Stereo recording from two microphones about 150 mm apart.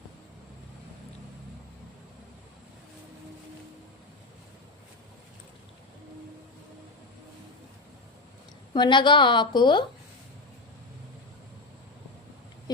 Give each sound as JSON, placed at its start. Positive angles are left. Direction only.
{"t": 8.7, "sound": "a woman's voice", "side_deg": 30}